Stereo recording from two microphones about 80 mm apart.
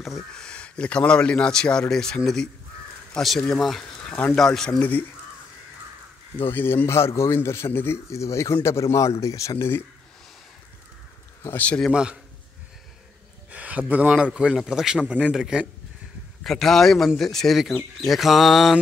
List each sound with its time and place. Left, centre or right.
0.0 s a man's voice: centre; by 5.0 s left
6.4 s a man's voice: left
11.5 s a man's voice: centre
11.9 s a man's voice: centre
13.5 s a man's voice: centre
16.4 s speech: centre